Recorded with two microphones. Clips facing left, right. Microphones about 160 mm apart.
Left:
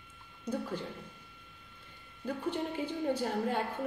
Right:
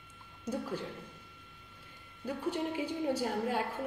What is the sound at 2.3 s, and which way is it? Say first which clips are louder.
A woman's voice: even; 10° right (ahead or behind).